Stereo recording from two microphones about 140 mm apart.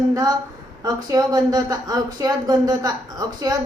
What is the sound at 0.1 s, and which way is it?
A woman's voice, 25° right (ahead or behind).